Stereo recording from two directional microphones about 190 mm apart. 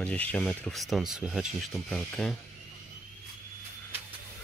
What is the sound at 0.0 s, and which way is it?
Speech, 5° left (ahead or behind).